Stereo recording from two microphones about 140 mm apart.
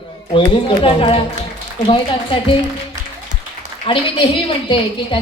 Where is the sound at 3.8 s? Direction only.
40° left (ahead or behind).